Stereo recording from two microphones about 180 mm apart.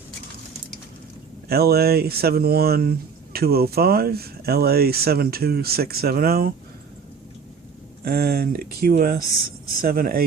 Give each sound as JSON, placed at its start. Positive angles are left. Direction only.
{"t": 1.5, "sound": "speech", "side_deg": -60}
{"t": 8.0, "sound": "speech", "side_deg": -60}